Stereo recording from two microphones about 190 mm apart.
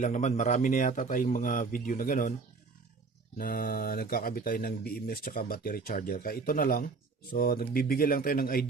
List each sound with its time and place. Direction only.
0.0 s speech: 40° left (ahead or behind)
3.3 s speech: 50° left (ahead or behind)